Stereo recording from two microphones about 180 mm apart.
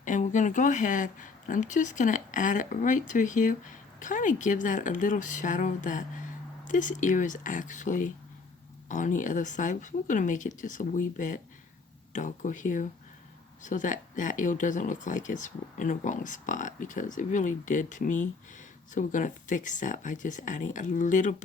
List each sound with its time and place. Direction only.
0.0 s speech: 45° left (ahead or behind)